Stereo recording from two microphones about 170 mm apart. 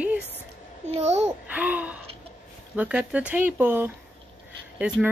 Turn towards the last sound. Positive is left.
turn(degrees=-5)  # may be behind; listen again after turning